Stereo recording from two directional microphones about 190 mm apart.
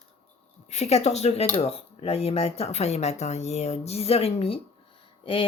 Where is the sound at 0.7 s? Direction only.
35° left (ahead or behind).